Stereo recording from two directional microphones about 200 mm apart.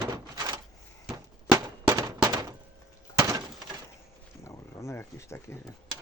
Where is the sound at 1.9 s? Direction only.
20° right (ahead or behind).